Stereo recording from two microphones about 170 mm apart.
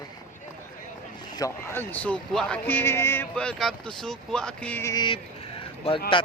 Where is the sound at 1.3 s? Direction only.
20° left (ahead or behind).